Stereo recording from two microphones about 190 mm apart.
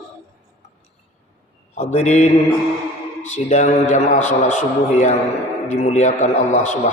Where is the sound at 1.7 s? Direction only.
35° left (ahead or behind).